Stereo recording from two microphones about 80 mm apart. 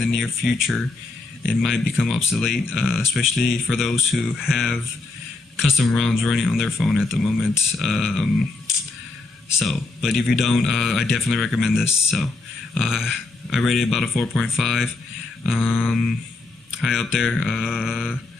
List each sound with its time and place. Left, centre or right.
0.0 s speech: centre
15.6 s mantra: centre
16.7 s speech: centre
17.6 s a sound: centre